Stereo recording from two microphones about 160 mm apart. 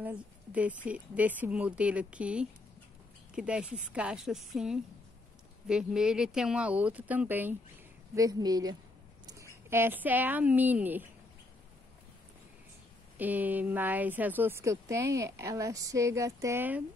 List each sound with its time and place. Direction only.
0.0 s a woman's voice: 10° right (ahead or behind)
8.1 s a woman's voice: 20° right (ahead or behind)
13.2 s a woman's voice: 10° right (ahead or behind)